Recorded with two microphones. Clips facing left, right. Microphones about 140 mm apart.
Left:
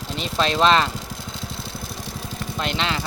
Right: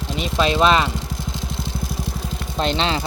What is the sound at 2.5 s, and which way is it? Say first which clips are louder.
Speech: right 5 dB; 30° right (ahead or behind).